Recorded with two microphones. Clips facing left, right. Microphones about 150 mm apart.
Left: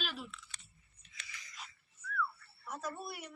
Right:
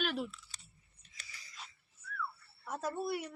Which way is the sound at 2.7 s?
30° right (ahead or behind).